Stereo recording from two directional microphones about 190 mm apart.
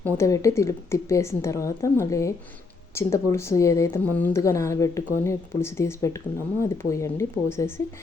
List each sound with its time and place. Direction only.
0.0 s a woman's voice: 15° left (ahead or behind)